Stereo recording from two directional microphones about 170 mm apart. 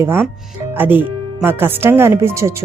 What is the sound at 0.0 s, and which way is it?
Speech, 15° right (ahead or behind).